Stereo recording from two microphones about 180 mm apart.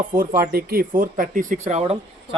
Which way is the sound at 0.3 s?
55° right (ahead or behind).